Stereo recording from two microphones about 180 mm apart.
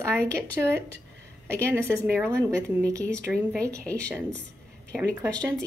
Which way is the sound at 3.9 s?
5° left (ahead or behind).